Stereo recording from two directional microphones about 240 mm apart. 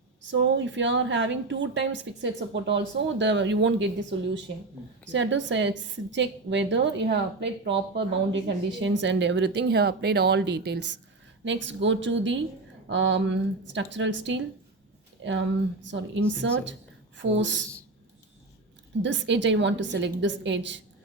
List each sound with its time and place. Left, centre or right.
0.3 s a woman's voice: right
19.0 s a woman's voice: right